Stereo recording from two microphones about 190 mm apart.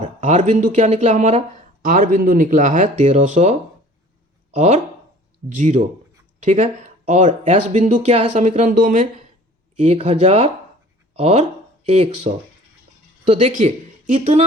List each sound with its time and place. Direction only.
0.0 s speech: 40° right (ahead or behind)
4.5 s speech: 35° right (ahead or behind)